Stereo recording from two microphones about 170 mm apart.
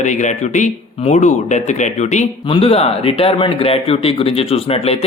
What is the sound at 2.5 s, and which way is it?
Speech, 30° left (ahead or behind).